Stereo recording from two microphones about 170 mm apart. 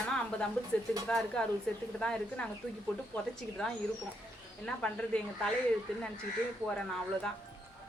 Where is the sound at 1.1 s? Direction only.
5° left (ahead or behind).